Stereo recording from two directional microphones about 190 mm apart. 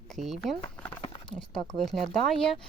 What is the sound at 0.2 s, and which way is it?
Speech, centre (ahead or behind).